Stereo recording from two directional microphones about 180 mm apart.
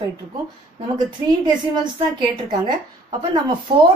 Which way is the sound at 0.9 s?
25° right (ahead or behind).